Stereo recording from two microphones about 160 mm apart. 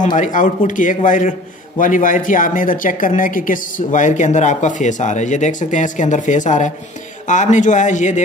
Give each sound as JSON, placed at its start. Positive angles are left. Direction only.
{"t": 0.0, "sound": "speech", "side_deg": 50}